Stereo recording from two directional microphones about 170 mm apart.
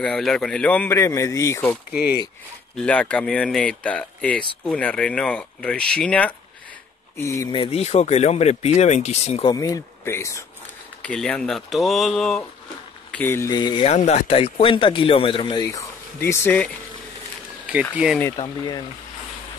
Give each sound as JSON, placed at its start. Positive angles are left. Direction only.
{"t": 0.0, "sound": "speech", "side_deg": 5}
{"t": 1.9, "sound": "speech", "side_deg": -5}
{"t": 2.8, "sound": "speech", "side_deg": 5}
{"t": 7.2, "sound": "speech", "side_deg": 15}
{"t": 7.5, "sound": "speech", "side_deg": 35}
{"t": 9.5, "sound": "speech", "side_deg": 20}
{"t": 11.0, "sound": "speech", "side_deg": 5}
{"t": 13.1, "sound": "speech", "side_deg": 10}
{"t": 13.8, "sound": "speech", "side_deg": 40}
{"t": 15.6, "sound": "speech", "side_deg": 20}
{"t": 17.9, "sound": "speech", "side_deg": -5}
{"t": 18.2, "sound": "speech", "side_deg": 25}